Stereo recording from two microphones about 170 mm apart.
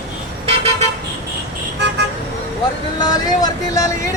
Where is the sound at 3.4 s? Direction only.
20° left (ahead or behind).